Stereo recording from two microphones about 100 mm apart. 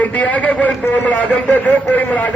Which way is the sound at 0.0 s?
15° left (ahead or behind).